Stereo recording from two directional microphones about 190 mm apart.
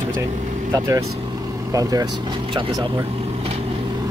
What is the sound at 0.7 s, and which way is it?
Speech, 15° right (ahead or behind).